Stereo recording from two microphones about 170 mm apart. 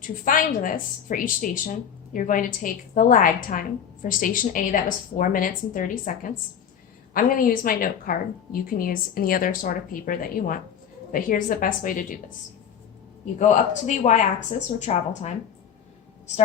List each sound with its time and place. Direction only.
0.3 s a woman's voice: 55° left (ahead or behind)
13.4 s speech: 45° left (ahead or behind)